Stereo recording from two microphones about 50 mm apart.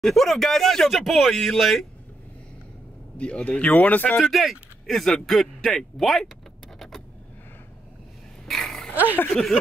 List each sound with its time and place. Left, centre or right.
0.1 s speech: centre
3.2 s speech: left
4.2 s speech: centre
8.5 s a sound: centre
9.3 s speech: centre